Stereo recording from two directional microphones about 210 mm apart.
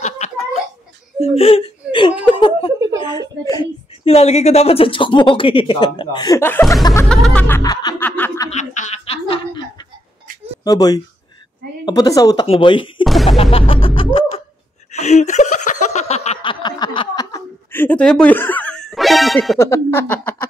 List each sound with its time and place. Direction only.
0.0 s laughter: 35° left (ahead or behind)
1.2 s a woman's voice: 30° left (ahead or behind)
7.1 s snicker: 5° left (ahead or behind)
8.5 s a sound: 35° left (ahead or behind)
10.6 s a woman's voice: 20° left (ahead or behind)
13.0 s music: centre (ahead or behind)
13.4 s a woman's voice: 25° left (ahead or behind)
15.0 s a sound: 35° left (ahead or behind); by 19.6 s centre (ahead or behind)
19.6 s a sound: 15° left (ahead or behind)